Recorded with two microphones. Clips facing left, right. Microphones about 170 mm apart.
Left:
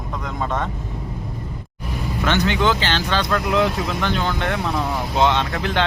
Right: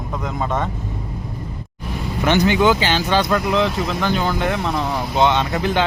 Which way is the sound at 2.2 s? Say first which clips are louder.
Right 4 dB; 15° right (ahead or behind).